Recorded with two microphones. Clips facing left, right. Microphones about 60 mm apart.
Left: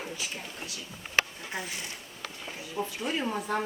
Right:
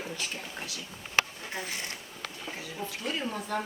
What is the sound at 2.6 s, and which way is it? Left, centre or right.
Speech, left.